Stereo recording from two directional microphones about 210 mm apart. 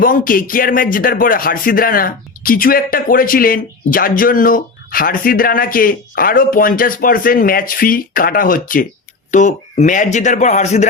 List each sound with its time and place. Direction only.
0.0 s speech: 40° left (ahead or behind)